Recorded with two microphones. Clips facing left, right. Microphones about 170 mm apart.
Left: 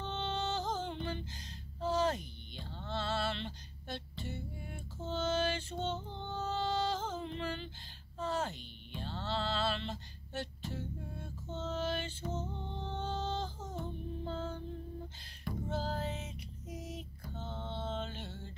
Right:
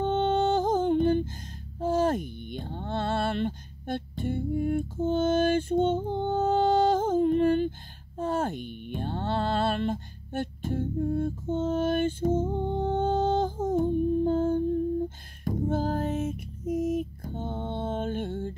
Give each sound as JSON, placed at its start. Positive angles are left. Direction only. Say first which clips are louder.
{"t": 0.0, "sound": "music", "louder": "right 13 dB", "side_deg": -50}
{"t": 1.8, "sound": "a sound", "louder": "right 8 dB", "side_deg": -50}
{"t": 8.2, "sound": "music", "louder": "right 8 dB", "side_deg": -50}